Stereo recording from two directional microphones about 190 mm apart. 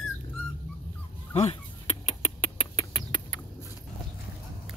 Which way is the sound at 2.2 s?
30° left (ahead or behind).